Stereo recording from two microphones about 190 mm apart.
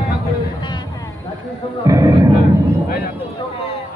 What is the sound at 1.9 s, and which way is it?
Music, 15° right (ahead or behind).